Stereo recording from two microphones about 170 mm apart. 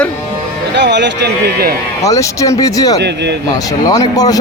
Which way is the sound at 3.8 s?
20° left (ahead or behind).